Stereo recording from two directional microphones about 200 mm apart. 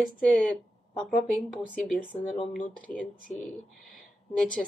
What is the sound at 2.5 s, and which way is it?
Speech, 40° left (ahead or behind).